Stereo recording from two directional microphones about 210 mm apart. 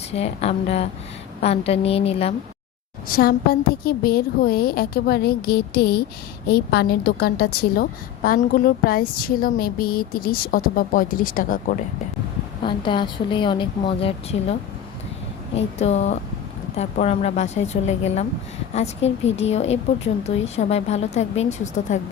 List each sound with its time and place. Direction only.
0.1 s a woman's voice: 30° left (ahead or behind)
3.1 s a woman's voice: 45° left (ahead or behind)
12.6 s a woman's voice: 25° left (ahead or behind)
15.5 s a woman's voice: 30° left (ahead or behind)